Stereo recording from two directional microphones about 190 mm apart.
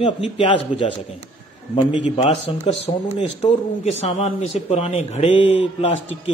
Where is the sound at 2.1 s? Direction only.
35° left (ahead or behind).